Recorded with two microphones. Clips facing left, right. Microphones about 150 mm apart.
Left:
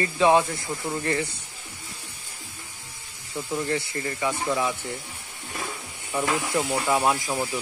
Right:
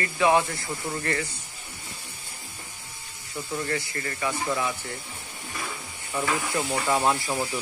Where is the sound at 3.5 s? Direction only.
15° left (ahead or behind).